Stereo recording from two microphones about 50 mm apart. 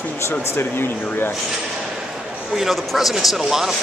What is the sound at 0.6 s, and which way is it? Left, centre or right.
Speech, left.